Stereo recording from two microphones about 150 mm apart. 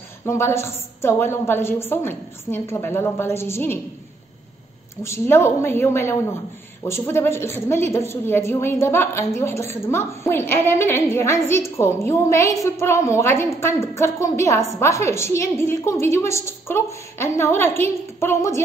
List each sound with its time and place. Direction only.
0.2 s a woman's voice: 15° left (ahead or behind)
5.0 s a woman's voice: 15° left (ahead or behind)